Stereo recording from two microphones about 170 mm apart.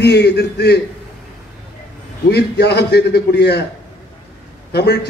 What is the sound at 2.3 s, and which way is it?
A man's voice, 75° left (ahead or behind).